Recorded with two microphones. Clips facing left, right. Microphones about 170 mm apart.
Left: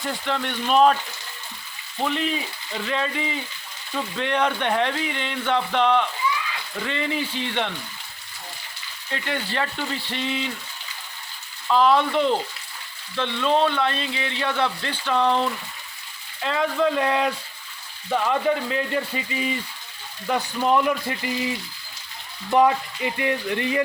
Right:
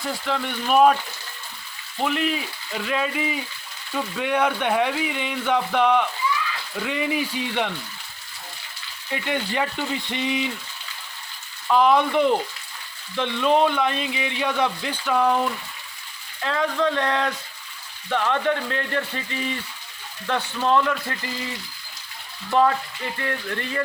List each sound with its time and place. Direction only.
0.0 s speech: centre (ahead or behind)
2.0 s speech: 5° right (ahead or behind)
9.0 s speech: 15° right (ahead or behind)
11.7 s speech: 10° right (ahead or behind); by 21.5 s 15° left (ahead or behind)
22.5 s speech: 15° left (ahead or behind)